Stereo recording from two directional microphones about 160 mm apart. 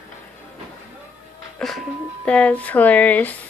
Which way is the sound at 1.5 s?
5° left (ahead or behind).